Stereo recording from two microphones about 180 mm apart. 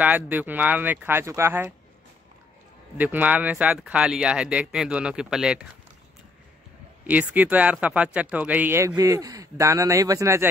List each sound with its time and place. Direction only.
0.0 s a man's voice: 10° right (ahead or behind)
3.0 s speech: 10° right (ahead or behind)
7.1 s a man's voice: 10° right (ahead or behind)